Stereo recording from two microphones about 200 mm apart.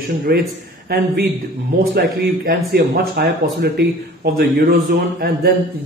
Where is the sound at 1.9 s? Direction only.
55° right (ahead or behind).